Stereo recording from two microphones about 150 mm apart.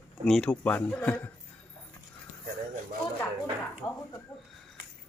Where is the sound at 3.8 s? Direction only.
20° left (ahead or behind).